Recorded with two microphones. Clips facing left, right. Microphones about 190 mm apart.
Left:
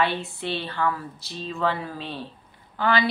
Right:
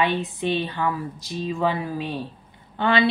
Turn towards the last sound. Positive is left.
turn(degrees=-25)  # may be behind; listen again after turning